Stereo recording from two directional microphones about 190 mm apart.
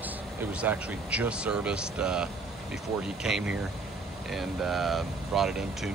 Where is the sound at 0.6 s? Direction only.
5° right (ahead or behind).